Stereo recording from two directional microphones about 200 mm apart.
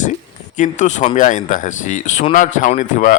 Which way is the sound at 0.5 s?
40° left (ahead or behind).